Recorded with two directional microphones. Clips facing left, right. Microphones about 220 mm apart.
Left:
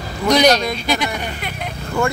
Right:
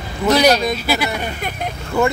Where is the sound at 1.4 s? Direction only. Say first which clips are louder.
Right 3 dB; 45° right (ahead or behind).